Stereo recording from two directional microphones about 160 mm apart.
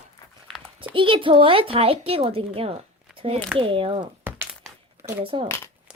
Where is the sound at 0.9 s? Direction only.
35° right (ahead or behind).